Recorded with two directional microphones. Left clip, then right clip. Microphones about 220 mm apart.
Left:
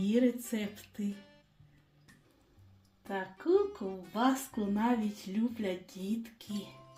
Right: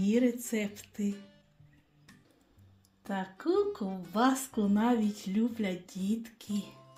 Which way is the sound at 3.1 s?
35° right (ahead or behind).